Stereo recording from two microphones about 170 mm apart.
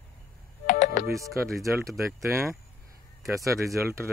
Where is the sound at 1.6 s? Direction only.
20° right (ahead or behind).